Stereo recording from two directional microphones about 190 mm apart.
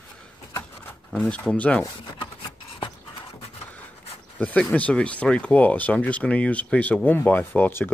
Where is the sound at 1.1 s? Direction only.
5° left (ahead or behind).